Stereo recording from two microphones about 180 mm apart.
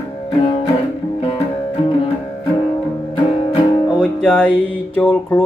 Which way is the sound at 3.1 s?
30° left (ahead or behind).